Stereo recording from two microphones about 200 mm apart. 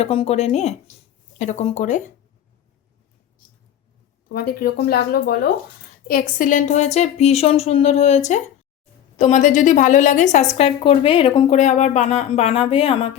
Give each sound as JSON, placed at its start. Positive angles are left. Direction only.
{"t": 0.0, "sound": "speech", "side_deg": 30}
{"t": 4.3, "sound": "speech", "side_deg": 50}